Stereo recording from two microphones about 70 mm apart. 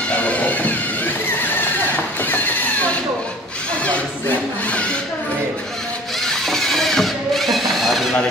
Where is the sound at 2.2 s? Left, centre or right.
Left.